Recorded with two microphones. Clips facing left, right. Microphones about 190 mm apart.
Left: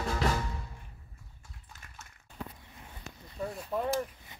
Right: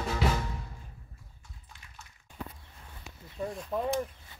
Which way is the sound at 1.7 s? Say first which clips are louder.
Left 2 dB; 45° left (ahead or behind).